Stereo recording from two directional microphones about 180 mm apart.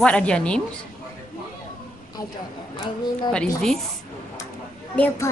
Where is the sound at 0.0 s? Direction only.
5° left (ahead or behind).